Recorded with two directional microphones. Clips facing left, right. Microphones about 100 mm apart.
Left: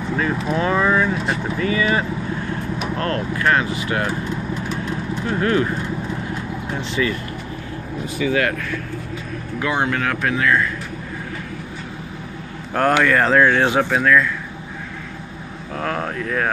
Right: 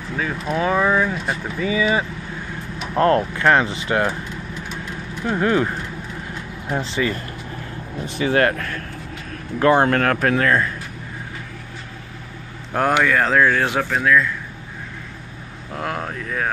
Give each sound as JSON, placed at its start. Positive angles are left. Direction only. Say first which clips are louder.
{"t": 0.1, "sound": "speech", "louder": "left 2 dB", "side_deg": 5}
{"t": 3.0, "sound": "speech", "louder": "right 8 dB", "side_deg": -30}
{"t": 5.3, "sound": "speech", "louder": "right 1 dB", "side_deg": -20}
{"t": 6.8, "sound": "speech", "louder": "left 1 dB", "side_deg": -35}
{"t": 9.6, "sound": "speech", "louder": "right 6 dB", "side_deg": -45}
{"t": 12.7, "sound": "speech", "louder": "left 1 dB", "side_deg": -10}
{"t": 14.0, "sound": "speech", "louder": "right 1 dB", "side_deg": -5}
{"t": 15.7, "sound": "speech", "louder": "left 2 dB", "side_deg": -10}